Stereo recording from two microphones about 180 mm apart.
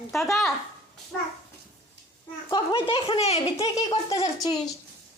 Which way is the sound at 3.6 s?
20° left (ahead or behind).